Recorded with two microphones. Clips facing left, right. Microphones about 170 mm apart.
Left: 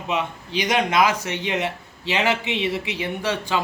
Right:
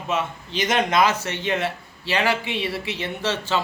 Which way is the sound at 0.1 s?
15° left (ahead or behind).